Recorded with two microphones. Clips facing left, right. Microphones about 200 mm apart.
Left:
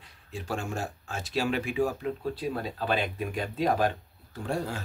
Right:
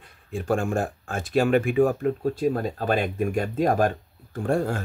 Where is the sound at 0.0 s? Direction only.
50° right (ahead or behind).